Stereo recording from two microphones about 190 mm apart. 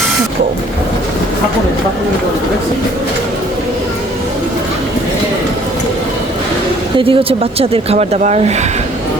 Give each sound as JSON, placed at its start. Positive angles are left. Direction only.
{"t": 6.9, "sound": "speech", "side_deg": -30}